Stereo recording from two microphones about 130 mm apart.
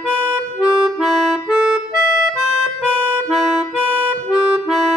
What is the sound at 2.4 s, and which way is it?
Accordion, 5° right (ahead or behind).